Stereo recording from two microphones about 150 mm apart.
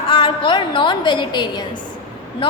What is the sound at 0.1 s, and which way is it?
A woman's voice, 35° left (ahead or behind).